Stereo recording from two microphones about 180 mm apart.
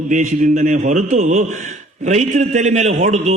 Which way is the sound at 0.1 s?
40° right (ahead or behind).